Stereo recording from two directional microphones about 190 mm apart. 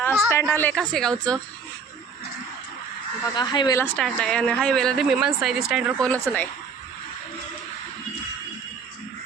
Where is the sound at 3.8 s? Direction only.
5° left (ahead or behind).